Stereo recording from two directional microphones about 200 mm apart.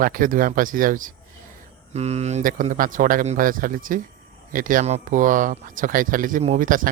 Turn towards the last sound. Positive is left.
turn(degrees=-40)  # may be behind; listen again after turning